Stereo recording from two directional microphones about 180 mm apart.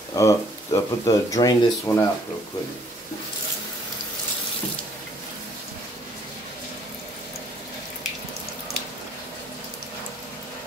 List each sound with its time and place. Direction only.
0.1 s speech: 15° left (ahead or behind)